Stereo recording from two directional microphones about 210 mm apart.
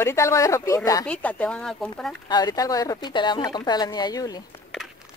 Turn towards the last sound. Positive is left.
turn(degrees=20)  # may be behind; listen again after turning